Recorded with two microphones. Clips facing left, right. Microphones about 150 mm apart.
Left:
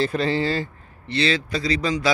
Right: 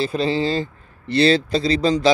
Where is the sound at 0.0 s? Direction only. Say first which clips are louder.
Right 1 dB; 15° right (ahead or behind).